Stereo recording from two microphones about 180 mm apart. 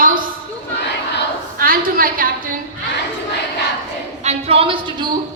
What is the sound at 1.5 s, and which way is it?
A woman's voice, 55° right (ahead or behind).